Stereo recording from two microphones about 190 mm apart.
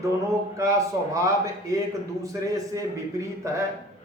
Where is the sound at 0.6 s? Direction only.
15° right (ahead or behind).